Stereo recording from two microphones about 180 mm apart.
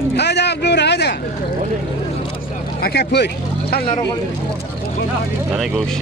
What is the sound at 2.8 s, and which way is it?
Speech, 65° left (ahead or behind).